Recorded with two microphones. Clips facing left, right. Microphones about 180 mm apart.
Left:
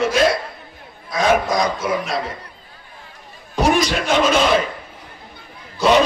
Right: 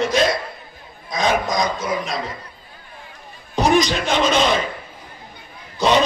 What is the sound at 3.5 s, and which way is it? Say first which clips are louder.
Speech: even; 5° left (ahead or behind).